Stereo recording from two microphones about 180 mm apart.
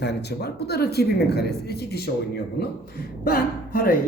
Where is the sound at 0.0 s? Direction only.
65° left (ahead or behind).